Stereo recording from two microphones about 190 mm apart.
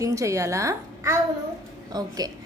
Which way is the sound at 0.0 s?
15° right (ahead or behind).